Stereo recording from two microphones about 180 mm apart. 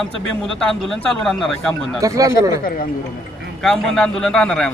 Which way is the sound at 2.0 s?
20° right (ahead or behind).